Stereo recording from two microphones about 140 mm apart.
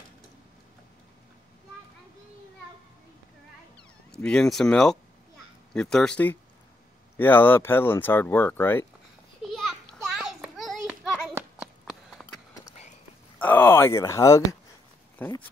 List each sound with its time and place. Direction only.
3.7 s speech: 5° left (ahead or behind)
9.5 s children playing: centre (ahead or behind)
11.6 s a sound: centre (ahead or behind)
13.4 s speech: 15° left (ahead or behind)